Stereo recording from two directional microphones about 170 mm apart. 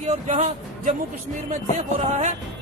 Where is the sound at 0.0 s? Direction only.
45° right (ahead or behind).